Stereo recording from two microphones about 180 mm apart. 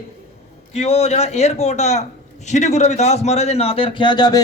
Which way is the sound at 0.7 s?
35° left (ahead or behind).